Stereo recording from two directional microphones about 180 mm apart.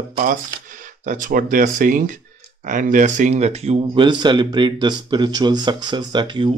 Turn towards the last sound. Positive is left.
turn(degrees=-25)  # may be behind; listen again after turning